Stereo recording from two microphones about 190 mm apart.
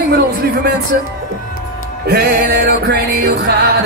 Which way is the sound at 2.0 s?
50° right (ahead or behind).